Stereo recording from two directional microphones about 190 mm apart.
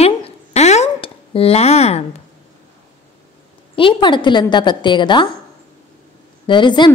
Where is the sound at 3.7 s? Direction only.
25° left (ahead or behind).